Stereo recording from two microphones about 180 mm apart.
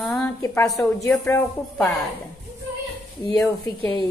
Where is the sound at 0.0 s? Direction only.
15° left (ahead or behind).